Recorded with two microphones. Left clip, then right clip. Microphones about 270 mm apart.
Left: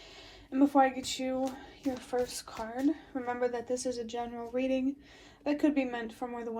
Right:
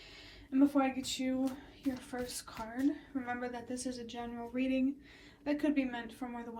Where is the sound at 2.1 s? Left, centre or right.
Centre.